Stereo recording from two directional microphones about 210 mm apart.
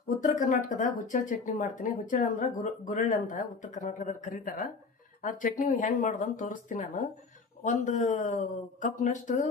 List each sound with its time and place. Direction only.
0.2 s speech: 40° left (ahead or behind)